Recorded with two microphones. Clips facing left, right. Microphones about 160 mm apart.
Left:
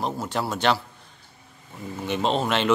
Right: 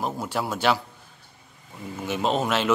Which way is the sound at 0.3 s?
10° right (ahead or behind).